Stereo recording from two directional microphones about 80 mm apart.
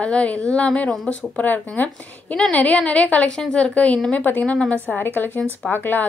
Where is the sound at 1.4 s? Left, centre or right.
Left.